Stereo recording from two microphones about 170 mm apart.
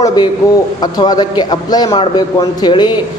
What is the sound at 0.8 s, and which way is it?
A woman's voice, 25° left (ahead or behind).